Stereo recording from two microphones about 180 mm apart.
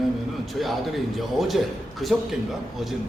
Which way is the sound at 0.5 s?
Centre (ahead or behind).